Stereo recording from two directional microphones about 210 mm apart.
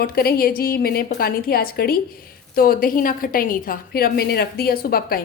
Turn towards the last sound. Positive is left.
turn(degrees=45)  # may be behind; listen again after turning